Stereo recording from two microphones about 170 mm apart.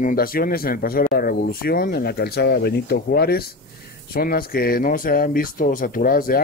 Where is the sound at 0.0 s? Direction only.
60° left (ahead or behind).